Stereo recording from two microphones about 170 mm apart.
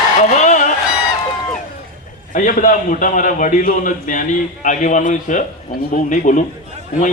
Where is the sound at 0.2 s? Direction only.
45° left (ahead or behind).